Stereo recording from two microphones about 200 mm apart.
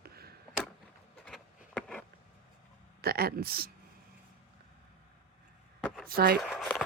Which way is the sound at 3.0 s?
50° right (ahead or behind).